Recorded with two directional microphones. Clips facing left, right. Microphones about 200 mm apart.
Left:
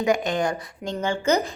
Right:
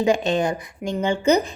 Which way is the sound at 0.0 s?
25° right (ahead or behind).